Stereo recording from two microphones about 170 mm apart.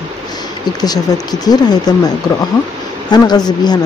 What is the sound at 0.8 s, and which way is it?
Speech, 25° left (ahead or behind).